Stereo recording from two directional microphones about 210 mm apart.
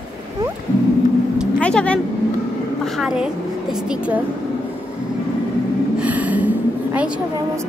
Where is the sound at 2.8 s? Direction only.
Centre (ahead or behind).